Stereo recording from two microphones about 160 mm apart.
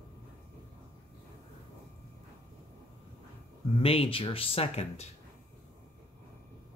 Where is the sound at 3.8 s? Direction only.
35° left (ahead or behind).